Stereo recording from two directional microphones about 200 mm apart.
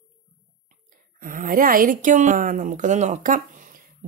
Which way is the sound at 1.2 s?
40° right (ahead or behind).